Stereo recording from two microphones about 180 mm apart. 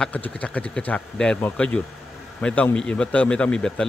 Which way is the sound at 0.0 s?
5° left (ahead or behind).